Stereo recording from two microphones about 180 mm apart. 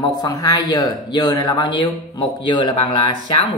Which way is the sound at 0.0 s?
20° left (ahead or behind).